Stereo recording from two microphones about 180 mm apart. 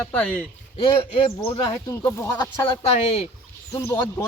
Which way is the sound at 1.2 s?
30° left (ahead or behind).